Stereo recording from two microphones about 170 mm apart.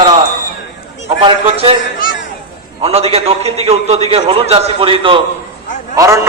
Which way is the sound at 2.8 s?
35° right (ahead or behind).